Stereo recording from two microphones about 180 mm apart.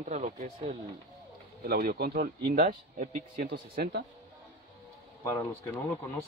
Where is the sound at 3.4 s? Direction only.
60° right (ahead or behind).